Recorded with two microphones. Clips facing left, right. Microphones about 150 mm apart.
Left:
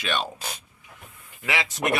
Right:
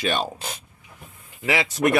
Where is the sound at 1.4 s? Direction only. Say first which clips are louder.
Right 5 dB; 35° right (ahead or behind).